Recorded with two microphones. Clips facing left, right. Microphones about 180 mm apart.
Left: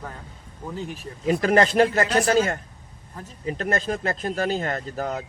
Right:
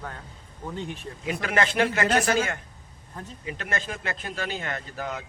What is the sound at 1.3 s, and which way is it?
Speech, 35° left (ahead or behind).